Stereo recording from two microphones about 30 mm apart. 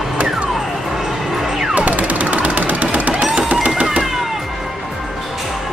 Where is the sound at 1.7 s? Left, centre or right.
Right.